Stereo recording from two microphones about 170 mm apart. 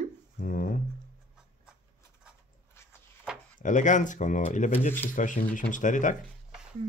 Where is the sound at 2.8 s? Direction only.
15° left (ahead or behind).